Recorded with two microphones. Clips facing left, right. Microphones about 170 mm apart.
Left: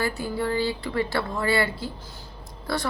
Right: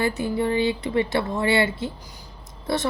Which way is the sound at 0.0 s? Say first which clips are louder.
Right 4 dB; 20° right (ahead or behind).